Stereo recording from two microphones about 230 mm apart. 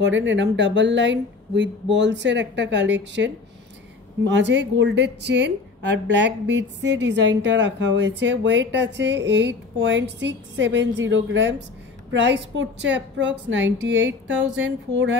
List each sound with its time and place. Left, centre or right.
0.0 s a woman's voice: right